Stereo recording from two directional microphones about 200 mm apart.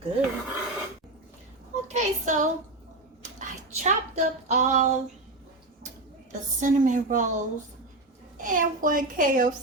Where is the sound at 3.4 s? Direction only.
35° right (ahead or behind).